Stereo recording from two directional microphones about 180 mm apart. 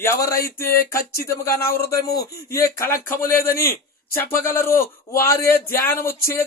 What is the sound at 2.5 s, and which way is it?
Speech, 15° left (ahead or behind).